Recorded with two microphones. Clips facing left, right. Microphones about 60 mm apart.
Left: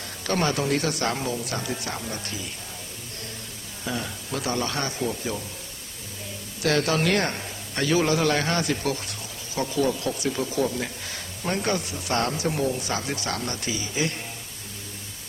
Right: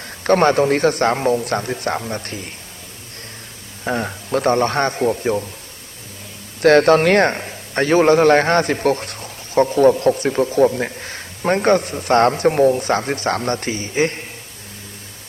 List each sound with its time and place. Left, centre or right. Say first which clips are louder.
0.3 s a man's voice: right 10 dB; right
3.8 s a man's voice: right 8 dB; right
6.6 s a man's voice: right 12 dB; right